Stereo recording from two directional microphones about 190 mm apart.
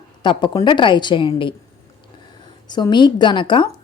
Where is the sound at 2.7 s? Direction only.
25° left (ahead or behind).